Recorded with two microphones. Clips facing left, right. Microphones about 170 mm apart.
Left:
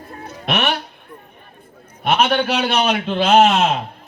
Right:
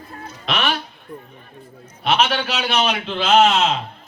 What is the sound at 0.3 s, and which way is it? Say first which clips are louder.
Speech: left 2 dB; 55° left (ahead or behind).